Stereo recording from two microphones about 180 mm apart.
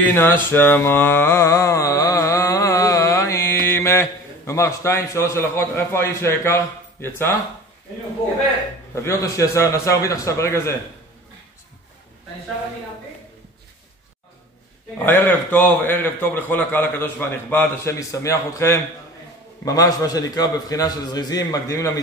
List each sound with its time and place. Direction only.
0.1 s mantra: 10° left (ahead or behind)
8.9 s a man's voice: 15° left (ahead or behind)
15.0 s a man's voice: 10° left (ahead or behind)